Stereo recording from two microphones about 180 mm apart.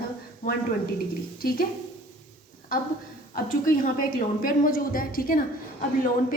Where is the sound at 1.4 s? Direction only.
55° left (ahead or behind).